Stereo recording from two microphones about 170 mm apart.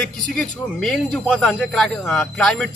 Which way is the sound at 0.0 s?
5° left (ahead or behind).